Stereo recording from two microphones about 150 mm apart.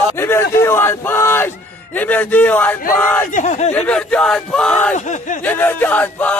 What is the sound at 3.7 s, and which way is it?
A man's voice, 10° left (ahead or behind).